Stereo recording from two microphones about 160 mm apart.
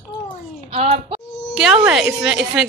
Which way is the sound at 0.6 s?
40° right (ahead or behind).